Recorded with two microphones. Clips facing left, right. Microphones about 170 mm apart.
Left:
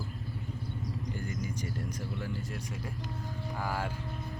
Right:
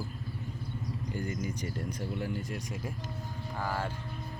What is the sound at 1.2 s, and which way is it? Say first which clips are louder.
Insect: right 2 dB; 50° right (ahead or behind).